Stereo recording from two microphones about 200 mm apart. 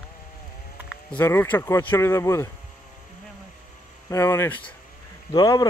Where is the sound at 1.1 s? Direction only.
10° left (ahead or behind).